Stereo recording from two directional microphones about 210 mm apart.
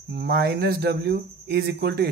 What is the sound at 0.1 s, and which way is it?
Speech, 50° right (ahead or behind).